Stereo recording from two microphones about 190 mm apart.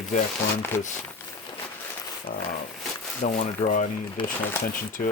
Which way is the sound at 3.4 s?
40° left (ahead or behind).